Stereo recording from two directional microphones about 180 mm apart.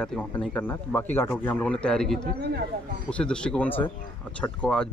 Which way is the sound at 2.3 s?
65° right (ahead or behind).